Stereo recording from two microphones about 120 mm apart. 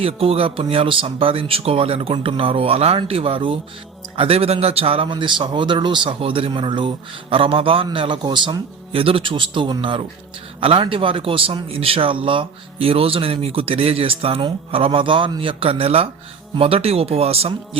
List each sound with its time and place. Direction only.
0.0 s a man's voice: 55° right (ahead or behind)